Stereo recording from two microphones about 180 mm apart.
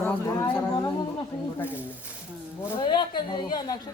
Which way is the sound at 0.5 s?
20° left (ahead or behind).